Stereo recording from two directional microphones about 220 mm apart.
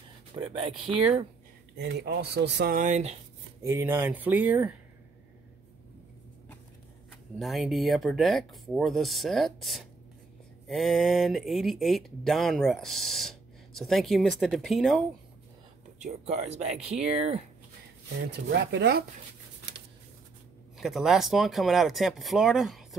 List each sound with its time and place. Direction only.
0.4 s speech: 25° right (ahead or behind)
1.8 s speech: 50° right (ahead or behind); by 3.2 s 30° right (ahead or behind)
3.6 s speech: 10° right (ahead or behind)
7.3 s speech: centre (ahead or behind)
16.0 s speech: 30° right (ahead or behind)
18.3 s speech: 50° right (ahead or behind)
20.7 s speech: centre (ahead or behind)